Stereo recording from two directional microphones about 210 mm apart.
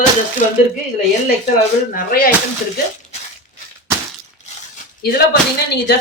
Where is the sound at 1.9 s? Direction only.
45° left (ahead or behind).